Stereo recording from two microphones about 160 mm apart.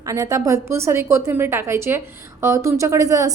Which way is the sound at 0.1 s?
20° right (ahead or behind).